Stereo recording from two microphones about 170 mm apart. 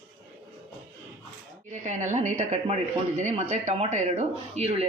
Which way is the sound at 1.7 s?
45° right (ahead or behind).